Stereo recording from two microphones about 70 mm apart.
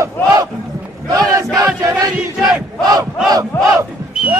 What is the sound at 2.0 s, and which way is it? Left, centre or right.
Battle cry, right.